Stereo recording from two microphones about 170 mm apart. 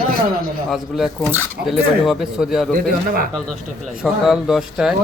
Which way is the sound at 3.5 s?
Centre (ahead or behind).